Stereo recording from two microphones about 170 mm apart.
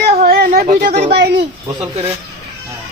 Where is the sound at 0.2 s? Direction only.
60° right (ahead or behind).